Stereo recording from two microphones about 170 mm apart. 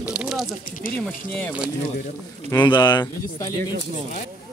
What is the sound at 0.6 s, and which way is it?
Speech, 55° left (ahead or behind).